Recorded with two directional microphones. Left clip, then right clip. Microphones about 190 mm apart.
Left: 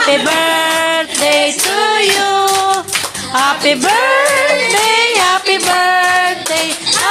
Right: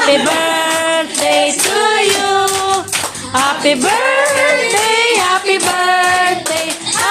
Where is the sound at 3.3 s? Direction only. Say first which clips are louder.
Left 1 dB; centre (ahead or behind).